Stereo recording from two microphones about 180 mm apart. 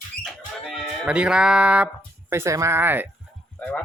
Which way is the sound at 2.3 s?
15° right (ahead or behind).